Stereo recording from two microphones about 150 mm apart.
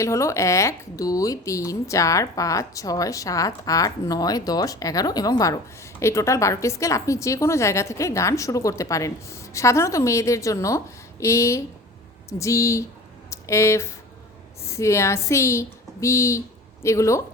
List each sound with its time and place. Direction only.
0.0 s speech: 20° left (ahead or behind)